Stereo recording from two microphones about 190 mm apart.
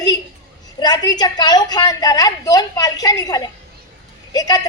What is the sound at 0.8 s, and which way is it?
A woman's voice, 20° left (ahead or behind).